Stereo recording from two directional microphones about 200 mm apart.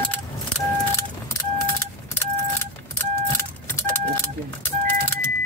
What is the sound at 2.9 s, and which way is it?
Vehicle, 10° left (ahead or behind).